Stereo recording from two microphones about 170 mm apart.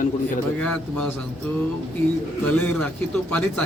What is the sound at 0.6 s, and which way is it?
Speech, 5° left (ahead or behind).